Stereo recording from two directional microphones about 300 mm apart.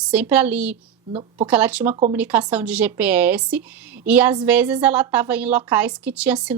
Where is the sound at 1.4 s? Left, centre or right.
Centre.